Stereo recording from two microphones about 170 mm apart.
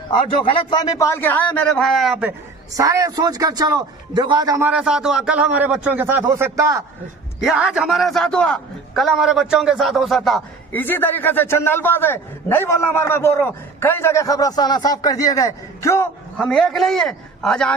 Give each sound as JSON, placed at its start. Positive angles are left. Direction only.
{"t": 0.4, "sound": "a man's voice", "side_deg": 30}
{"t": 2.7, "sound": "a man's voice", "side_deg": -20}
{"t": 4.6, "sound": "a man's voice", "side_deg": -5}
{"t": 7.3, "sound": "a man's voice", "side_deg": -5}
{"t": 10.8, "sound": "a man's voice", "side_deg": 10}
{"t": 16.3, "sound": "a man's voice", "side_deg": 0}